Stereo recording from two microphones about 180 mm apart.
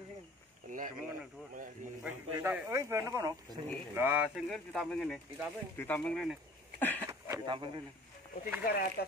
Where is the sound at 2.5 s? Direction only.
15° right (ahead or behind); by 7.1 s 10° left (ahead or behind).